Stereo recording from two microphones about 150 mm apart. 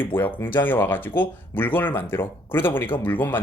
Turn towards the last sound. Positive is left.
turn(degrees=10)  # may be behind; listen again after turning